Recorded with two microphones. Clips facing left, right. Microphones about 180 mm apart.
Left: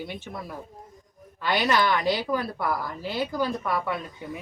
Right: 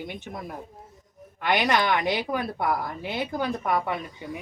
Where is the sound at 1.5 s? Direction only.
20° right (ahead or behind).